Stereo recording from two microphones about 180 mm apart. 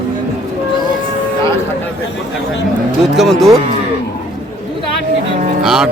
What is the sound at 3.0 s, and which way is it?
Speech, centre (ahead or behind).